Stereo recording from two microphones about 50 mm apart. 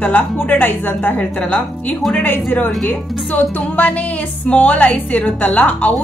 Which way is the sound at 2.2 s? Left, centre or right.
Left.